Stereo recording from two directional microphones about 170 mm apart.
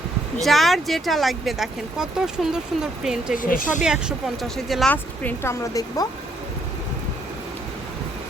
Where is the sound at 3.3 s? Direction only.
55° left (ahead or behind).